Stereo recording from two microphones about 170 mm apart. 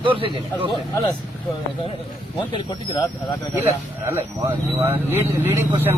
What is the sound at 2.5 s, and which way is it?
Speech, 25° left (ahead or behind).